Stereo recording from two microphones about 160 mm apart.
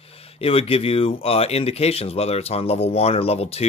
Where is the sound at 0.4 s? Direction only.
35° left (ahead or behind).